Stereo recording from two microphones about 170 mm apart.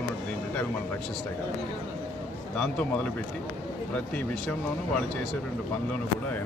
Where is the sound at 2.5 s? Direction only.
5° left (ahead or behind).